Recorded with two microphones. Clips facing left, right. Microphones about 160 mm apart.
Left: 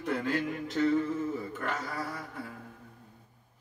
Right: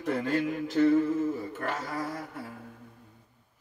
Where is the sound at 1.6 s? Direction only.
35° right (ahead or behind).